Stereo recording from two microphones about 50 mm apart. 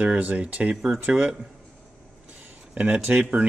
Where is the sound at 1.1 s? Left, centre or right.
Right.